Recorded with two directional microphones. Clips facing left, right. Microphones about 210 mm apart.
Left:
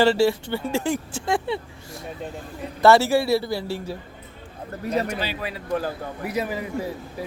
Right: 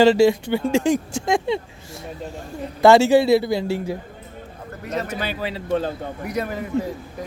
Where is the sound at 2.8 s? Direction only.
15° right (ahead or behind).